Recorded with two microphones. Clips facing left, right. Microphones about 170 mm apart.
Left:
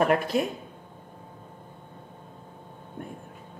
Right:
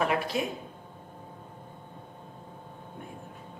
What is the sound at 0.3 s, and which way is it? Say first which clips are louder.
Speech: left 5 dB; 50° left (ahead or behind).